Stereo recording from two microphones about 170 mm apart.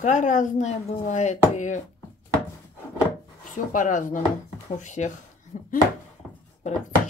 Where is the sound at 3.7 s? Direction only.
50° left (ahead or behind).